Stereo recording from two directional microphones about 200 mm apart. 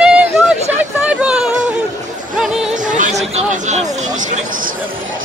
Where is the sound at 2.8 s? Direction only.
40° right (ahead or behind).